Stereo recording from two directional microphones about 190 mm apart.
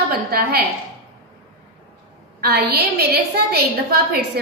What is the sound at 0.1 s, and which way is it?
Speech, 55° right (ahead or behind).